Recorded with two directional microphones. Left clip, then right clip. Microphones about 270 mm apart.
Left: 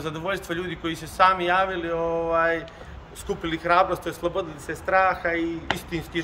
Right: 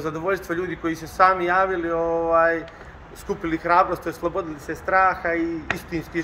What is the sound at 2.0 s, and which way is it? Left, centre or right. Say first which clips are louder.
Speech: right 2 dB; centre.